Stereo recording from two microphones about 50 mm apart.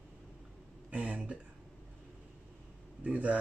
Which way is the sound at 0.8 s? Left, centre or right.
Right.